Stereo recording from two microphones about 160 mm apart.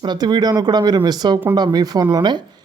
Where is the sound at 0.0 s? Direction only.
25° right (ahead or behind).